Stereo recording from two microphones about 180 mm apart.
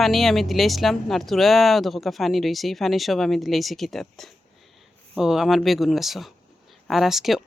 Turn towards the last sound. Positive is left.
turn(degrees=0)  # may be behind; listen again after turning